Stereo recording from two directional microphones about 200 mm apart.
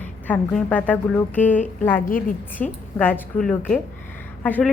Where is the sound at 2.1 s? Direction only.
45° left (ahead or behind).